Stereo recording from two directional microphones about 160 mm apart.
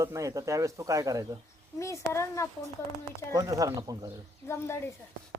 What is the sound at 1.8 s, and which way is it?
Speech, 20° left (ahead or behind).